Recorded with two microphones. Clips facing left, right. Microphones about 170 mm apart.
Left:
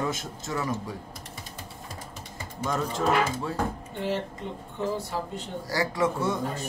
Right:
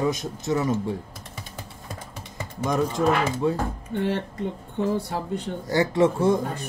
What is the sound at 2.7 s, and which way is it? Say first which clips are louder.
Speech: right 4 dB; 15° right (ahead or behind).